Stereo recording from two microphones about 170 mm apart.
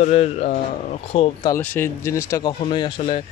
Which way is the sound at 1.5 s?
10° left (ahead or behind).